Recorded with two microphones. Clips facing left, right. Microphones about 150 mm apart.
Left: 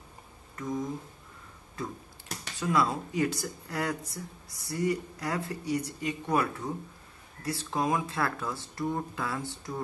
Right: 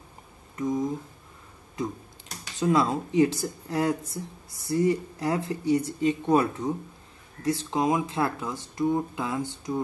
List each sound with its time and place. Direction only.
0.6 s speech: 20° right (ahead or behind)